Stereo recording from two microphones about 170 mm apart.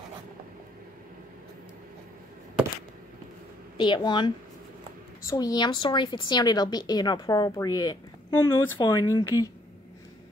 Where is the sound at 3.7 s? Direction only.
25° left (ahead or behind).